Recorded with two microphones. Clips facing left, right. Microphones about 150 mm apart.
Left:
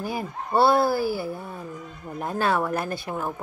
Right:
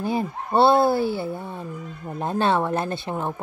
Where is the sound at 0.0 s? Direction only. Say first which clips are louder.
Right 5 dB; 25° right (ahead or behind).